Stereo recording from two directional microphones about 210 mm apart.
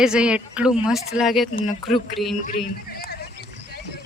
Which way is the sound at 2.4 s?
40° left (ahead or behind).